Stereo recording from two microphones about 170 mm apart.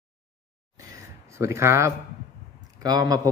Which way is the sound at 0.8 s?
15° right (ahead or behind).